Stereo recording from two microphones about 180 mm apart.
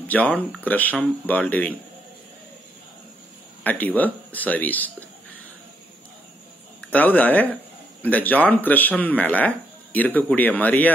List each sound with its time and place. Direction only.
0.1 s speech: 10° left (ahead or behind)
3.6 s speech: 10° left (ahead or behind)
6.9 s speech: 10° left (ahead or behind)